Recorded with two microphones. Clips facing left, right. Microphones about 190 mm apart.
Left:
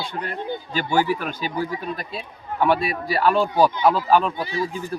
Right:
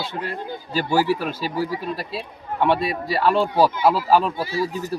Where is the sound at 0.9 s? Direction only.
5° right (ahead or behind).